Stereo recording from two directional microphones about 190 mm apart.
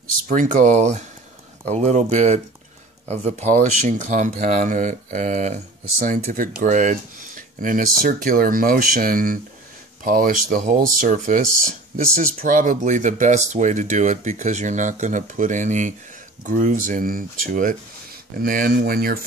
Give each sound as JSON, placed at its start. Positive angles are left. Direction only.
{"t": 0.3, "sound": "speech", "side_deg": -45}
{"t": 3.8, "sound": "speech", "side_deg": -40}